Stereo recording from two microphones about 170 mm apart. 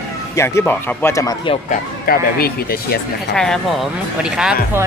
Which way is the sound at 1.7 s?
60° left (ahead or behind).